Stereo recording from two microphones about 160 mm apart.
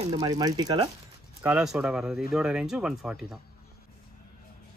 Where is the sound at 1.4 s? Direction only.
5° right (ahead or behind).